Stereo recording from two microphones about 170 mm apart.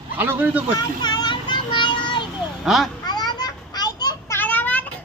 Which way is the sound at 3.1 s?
25° left (ahead or behind).